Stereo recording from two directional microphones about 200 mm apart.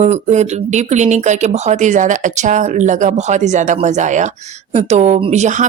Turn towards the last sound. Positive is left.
turn(degrees=-35)  # may be behind; listen again after turning